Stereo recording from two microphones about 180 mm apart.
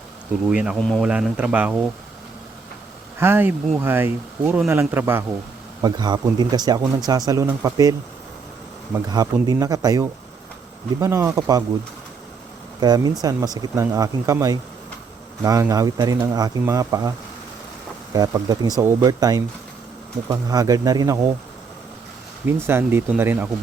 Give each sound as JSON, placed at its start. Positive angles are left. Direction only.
{"t": 0.4, "sound": "speech", "side_deg": -5}
{"t": 1.0, "sound": "speech", "side_deg": -5}
{"t": 3.2, "sound": "speech", "side_deg": -10}
{"t": 5.8, "sound": "speech", "side_deg": -20}
{"t": 9.1, "sound": "speech", "side_deg": -20}
{"t": 12.8, "sound": "speech", "side_deg": -20}
{"t": 22.4, "sound": "speech", "side_deg": -15}